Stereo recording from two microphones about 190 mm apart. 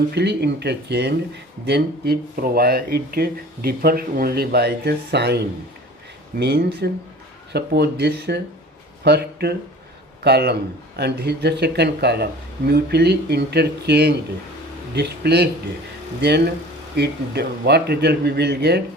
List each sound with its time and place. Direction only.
0.1 s speech: 60° right (ahead or behind)
6.4 s speech: 60° right (ahead or behind)
17.0 s speech: 60° right (ahead or behind)